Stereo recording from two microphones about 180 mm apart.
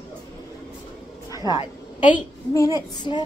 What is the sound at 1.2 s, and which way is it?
Speech, 20° left (ahead or behind).